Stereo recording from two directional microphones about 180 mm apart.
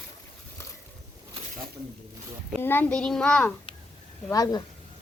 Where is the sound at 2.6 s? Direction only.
10° left (ahead or behind).